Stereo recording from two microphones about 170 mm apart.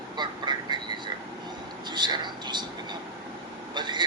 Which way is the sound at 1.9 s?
25° right (ahead or behind).